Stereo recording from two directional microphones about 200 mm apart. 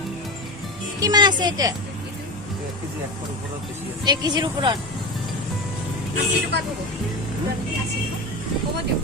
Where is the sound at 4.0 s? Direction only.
20° right (ahead or behind).